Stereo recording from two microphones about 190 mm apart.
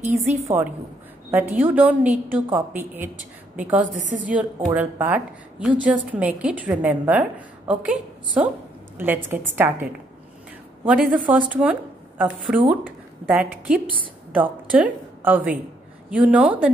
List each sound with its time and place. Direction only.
0.5 s a woman's voice: 15° right (ahead or behind)
3.8 s a woman's voice: 45° right (ahead or behind)
4.3 s a woman's voice: 10° right (ahead or behind)
10.9 s a woman's voice: 5° right (ahead or behind)